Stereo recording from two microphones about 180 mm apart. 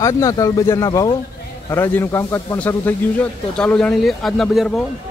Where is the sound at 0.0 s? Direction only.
15° left (ahead or behind); by 4.6 s centre (ahead or behind).